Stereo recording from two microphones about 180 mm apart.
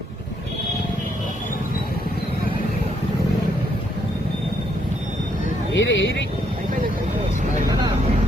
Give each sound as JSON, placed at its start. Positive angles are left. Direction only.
{"t": 5.7, "sound": "speech", "side_deg": 90}